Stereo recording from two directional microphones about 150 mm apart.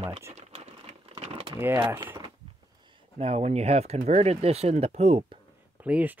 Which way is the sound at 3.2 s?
45° right (ahead or behind).